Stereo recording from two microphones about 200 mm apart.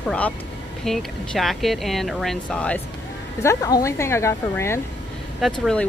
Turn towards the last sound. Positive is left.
turn(degrees=0)  # may be behind; listen again after turning